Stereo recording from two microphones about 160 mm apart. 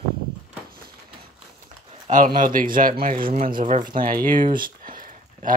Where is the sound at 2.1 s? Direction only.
55° right (ahead or behind).